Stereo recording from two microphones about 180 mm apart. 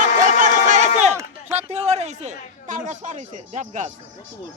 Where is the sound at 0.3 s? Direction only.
45° right (ahead or behind).